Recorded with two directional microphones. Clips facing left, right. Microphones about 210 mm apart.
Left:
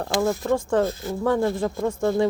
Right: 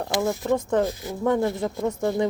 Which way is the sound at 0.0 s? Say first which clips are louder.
Left 2 dB; 20° right (ahead or behind).